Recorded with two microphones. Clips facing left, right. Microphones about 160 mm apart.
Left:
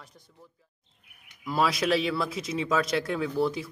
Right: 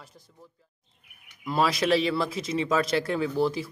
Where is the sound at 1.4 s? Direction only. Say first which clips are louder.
Right 1 dB; centre (ahead or behind).